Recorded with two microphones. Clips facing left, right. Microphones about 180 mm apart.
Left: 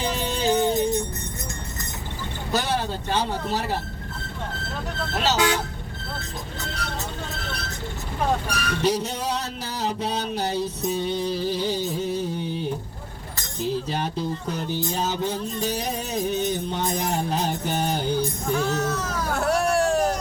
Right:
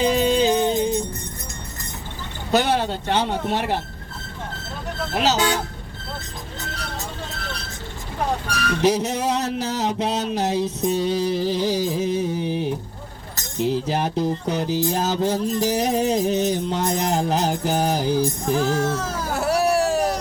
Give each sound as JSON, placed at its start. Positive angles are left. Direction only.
{"t": 0.2, "sound": "music", "side_deg": -70}
{"t": 2.5, "sound": "music", "side_deg": -70}
{"t": 5.1, "sound": "speech", "side_deg": -75}
{"t": 8.8, "sound": "a sound", "side_deg": -75}
{"t": 13.6, "sound": "music", "side_deg": -75}
{"t": 18.5, "sound": "speech", "side_deg": -30}
{"t": 19.3, "sound": "hubbub", "side_deg": -5}